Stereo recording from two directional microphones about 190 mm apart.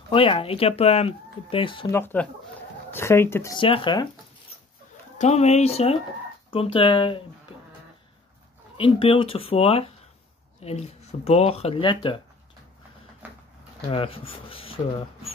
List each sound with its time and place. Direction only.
0.1 s speech: 30° left (ahead or behind)
1.9 s speech: 10° left (ahead or behind)
3.5 s speech: 25° left (ahead or behind)
5.2 s speech: 35° left (ahead or behind)
8.7 s speech: 30° left (ahead or behind)
13.2 s a sound: 10° right (ahead or behind)
13.8 s speech: 30° left (ahead or behind)